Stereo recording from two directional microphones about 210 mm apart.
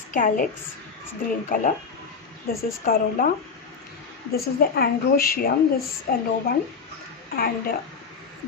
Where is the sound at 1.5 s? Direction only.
40° left (ahead or behind).